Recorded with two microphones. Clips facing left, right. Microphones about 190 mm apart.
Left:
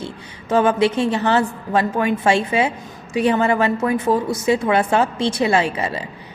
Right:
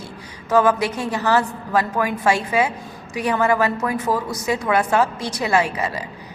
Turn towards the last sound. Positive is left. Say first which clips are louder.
# left 1 dB
turn(degrees=25)  # may be behind; listen again after turning